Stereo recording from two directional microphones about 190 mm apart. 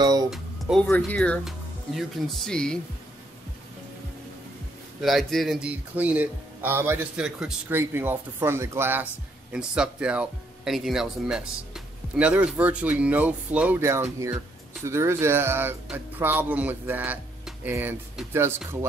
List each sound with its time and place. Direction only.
0.0 s music: 20° right (ahead or behind)
0.3 s speech: centre (ahead or behind)
5.0 s speech: centre (ahead or behind)